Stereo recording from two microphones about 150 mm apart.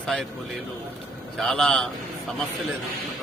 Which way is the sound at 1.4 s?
Centre (ahead or behind).